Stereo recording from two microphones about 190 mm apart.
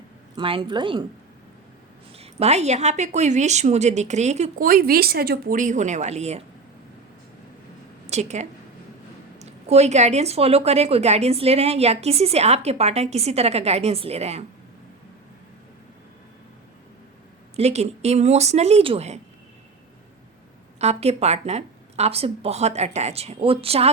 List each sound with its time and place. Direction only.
0.3 s speech: 25° right (ahead or behind)
2.1 s speech: 35° right (ahead or behind)
8.0 s a woman's voice: 35° right (ahead or behind)
17.6 s speech: 35° right (ahead or behind)
20.7 s speech: 35° right (ahead or behind)